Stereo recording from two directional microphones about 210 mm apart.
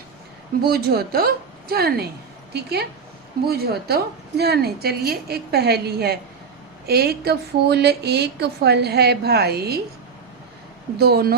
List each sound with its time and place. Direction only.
0.7 s speech: 50° right (ahead or behind)
10.9 s speech: 50° right (ahead or behind)